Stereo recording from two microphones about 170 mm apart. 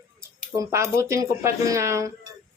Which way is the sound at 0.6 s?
15° right (ahead or behind).